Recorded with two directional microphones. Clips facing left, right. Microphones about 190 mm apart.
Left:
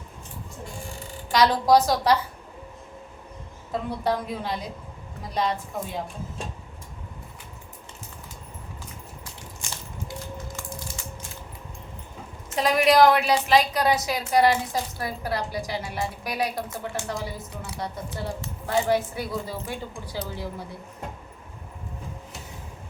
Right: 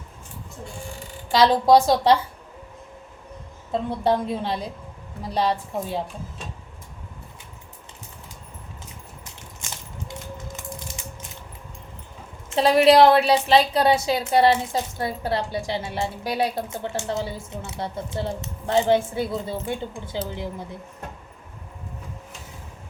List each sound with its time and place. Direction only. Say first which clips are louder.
1.3 s a woman's voice: right 3 dB; 25° right (ahead or behind)
3.7 s a woman's voice: right 4 dB; 25° right (ahead or behind)
10.6 s mechanisms: right 1 dB; 20° right (ahead or behind)
12.5 s a woman's voice: right 4 dB; 30° right (ahead or behind)